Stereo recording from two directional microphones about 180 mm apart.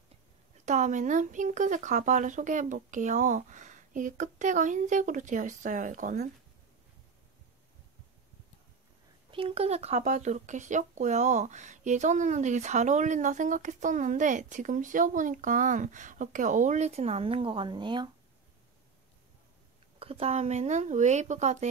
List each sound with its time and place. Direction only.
0.7 s speech: 40° right (ahead or behind)
9.3 s speech: 30° right (ahead or behind)
20.0 s a woman's voice: 30° right (ahead or behind)